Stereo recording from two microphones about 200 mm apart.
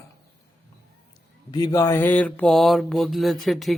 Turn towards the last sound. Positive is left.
turn(degrees=0)  # may be behind; listen again after turning